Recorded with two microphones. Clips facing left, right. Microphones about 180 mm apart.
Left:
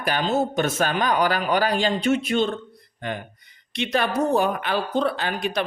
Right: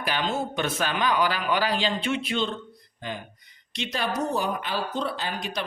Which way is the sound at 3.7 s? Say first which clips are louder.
Left 6 dB; 60° left (ahead or behind).